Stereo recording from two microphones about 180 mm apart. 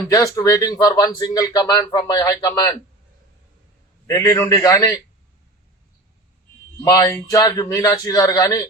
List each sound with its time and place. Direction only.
0.1 s speech: 20° left (ahead or behind)
4.0 s a man's voice: 20° left (ahead or behind)
6.8 s speech: 15° left (ahead or behind)